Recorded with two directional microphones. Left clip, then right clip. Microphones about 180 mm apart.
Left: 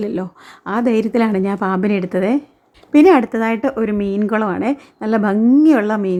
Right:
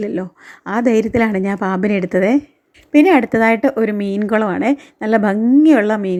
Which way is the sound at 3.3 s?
20° right (ahead or behind).